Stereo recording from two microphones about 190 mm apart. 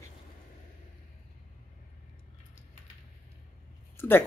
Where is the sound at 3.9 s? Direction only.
10° left (ahead or behind).